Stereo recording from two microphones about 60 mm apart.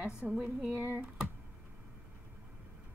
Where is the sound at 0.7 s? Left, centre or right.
Right.